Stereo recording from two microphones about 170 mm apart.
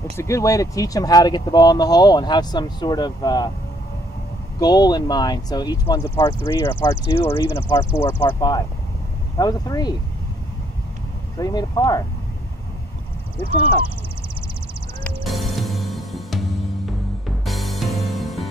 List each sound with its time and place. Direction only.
0.2 s speech: 20° left (ahead or behind)
4.6 s speech: 25° left (ahead or behind)
11.3 s speech: 20° left (ahead or behind)
15.0 s music: centre (ahead or behind)
17.5 s music: centre (ahead or behind)